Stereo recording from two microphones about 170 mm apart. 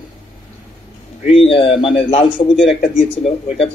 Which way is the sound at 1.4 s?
35° left (ahead or behind).